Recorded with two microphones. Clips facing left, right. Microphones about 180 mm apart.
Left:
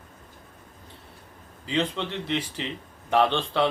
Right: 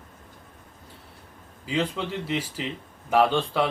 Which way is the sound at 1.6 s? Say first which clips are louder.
Even; 5° right (ahead or behind).